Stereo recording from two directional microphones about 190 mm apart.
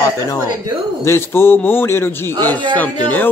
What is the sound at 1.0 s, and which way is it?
Speech, 15° left (ahead or behind).